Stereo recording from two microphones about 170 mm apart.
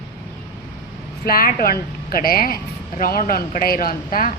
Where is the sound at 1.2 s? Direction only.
60° left (ahead or behind).